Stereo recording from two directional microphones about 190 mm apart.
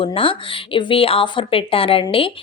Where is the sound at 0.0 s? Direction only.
30° left (ahead or behind).